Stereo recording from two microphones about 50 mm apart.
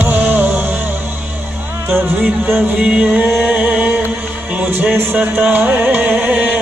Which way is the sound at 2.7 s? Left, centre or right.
Centre.